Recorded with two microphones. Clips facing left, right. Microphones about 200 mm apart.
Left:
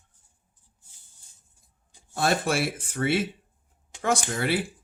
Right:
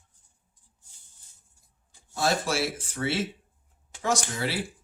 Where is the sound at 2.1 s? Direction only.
55° left (ahead or behind).